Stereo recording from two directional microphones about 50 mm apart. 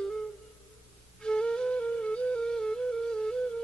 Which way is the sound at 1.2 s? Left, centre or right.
Centre.